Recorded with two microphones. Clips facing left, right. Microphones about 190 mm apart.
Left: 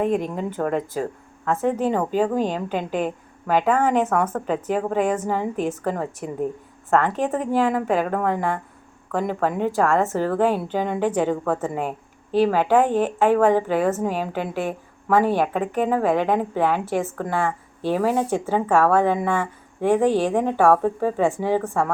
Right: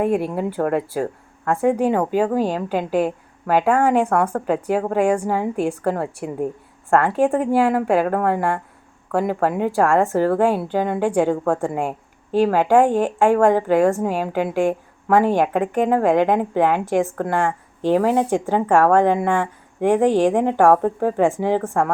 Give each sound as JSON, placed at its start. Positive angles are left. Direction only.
{"t": 0.0, "sound": "a woman's voice", "side_deg": -10}